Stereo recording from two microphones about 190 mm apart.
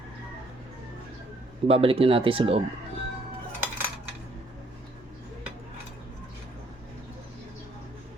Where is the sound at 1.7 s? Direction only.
30° right (ahead or behind).